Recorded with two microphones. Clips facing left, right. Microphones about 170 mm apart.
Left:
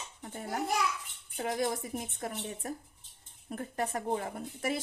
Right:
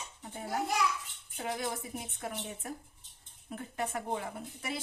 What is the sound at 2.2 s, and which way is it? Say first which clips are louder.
A woman's voice: left 2 dB; 40° left (ahead or behind).